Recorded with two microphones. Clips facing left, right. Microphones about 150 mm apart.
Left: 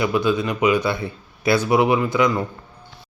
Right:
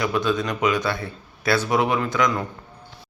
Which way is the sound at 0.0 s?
10° left (ahead or behind).